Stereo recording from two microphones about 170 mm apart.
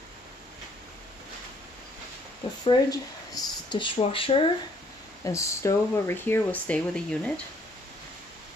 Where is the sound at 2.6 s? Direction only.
20° left (ahead or behind).